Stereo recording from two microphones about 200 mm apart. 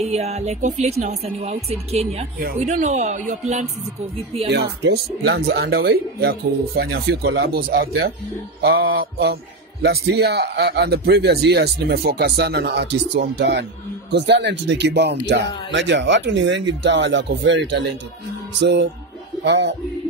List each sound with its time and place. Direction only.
0.0 s speech: 30° right (ahead or behind)
4.5 s a man's voice: 55° right (ahead or behind)